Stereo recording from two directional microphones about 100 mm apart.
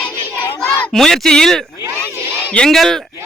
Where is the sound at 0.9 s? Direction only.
5° left (ahead or behind).